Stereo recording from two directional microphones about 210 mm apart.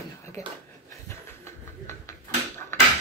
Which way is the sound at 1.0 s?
15° left (ahead or behind).